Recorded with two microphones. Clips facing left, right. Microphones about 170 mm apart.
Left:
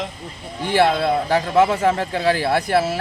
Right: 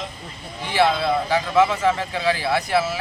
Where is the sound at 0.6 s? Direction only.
55° left (ahead or behind).